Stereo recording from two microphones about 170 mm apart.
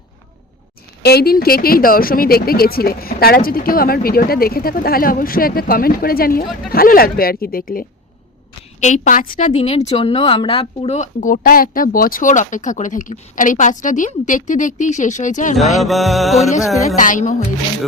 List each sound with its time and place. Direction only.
1.0 s a woman's voice: 65° left (ahead or behind); by 15.5 s 50° left (ahead or behind)
15.5 s music: centre (ahead or behind)
16.8 s a woman's voice: 50° left (ahead or behind)